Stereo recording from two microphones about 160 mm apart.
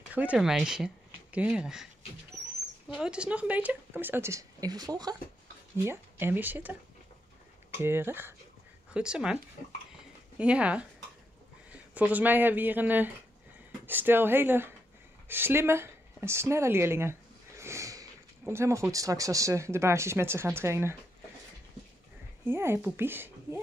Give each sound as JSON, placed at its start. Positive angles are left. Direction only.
{"t": 0.1, "sound": "speech", "side_deg": -10}
{"t": 2.9, "sound": "speech", "side_deg": -5}
{"t": 5.9, "sound": "speech", "side_deg": -15}
{"t": 15.2, "sound": "a sound", "side_deg": -15}
{"t": 18.4, "sound": "speech", "side_deg": -15}
{"t": 22.4, "sound": "speech", "side_deg": -15}